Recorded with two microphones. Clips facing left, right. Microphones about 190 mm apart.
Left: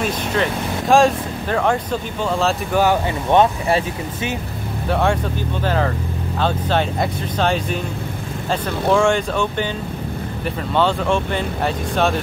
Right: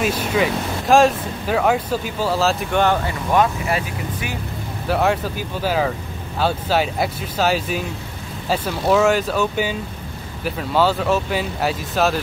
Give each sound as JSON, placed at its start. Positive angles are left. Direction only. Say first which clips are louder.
{"t": 0.0, "sound": "speech", "louder": "right 1 dB", "side_deg": -10}
{"t": 3.3, "sound": "speech", "louder": "left 3 dB", "side_deg": 25}
{"t": 4.8, "sound": "speech", "louder": "even", "side_deg": -5}